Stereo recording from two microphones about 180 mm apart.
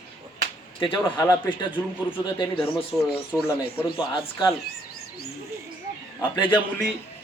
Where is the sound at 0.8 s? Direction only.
25° left (ahead or behind).